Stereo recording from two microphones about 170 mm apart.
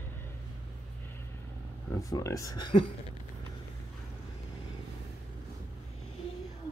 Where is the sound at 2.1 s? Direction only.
20° left (ahead or behind).